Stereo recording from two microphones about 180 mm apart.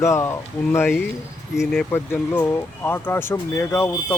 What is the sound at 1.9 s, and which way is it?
Speech, 10° left (ahead or behind).